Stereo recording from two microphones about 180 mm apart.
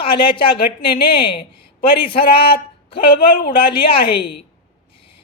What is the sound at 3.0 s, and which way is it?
Speech, 60° left (ahead or behind).